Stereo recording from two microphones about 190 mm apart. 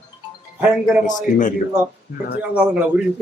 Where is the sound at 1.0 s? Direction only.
40° left (ahead or behind).